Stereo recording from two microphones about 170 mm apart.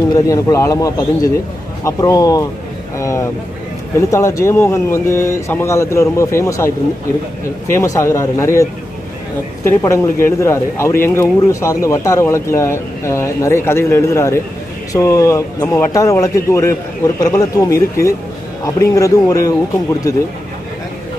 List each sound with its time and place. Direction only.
0.1 s speech: 20° left (ahead or behind)
9.7 s speech: 15° left (ahead or behind)